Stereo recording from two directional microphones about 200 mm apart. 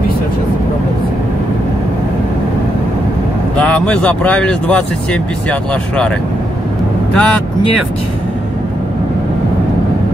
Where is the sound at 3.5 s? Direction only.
5° left (ahead or behind).